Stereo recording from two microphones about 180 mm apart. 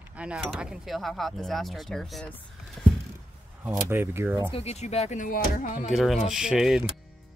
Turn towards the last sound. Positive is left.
turn(degrees=-5)  # may be behind; listen again after turning